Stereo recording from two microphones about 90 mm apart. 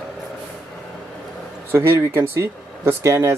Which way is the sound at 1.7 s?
25° right (ahead or behind).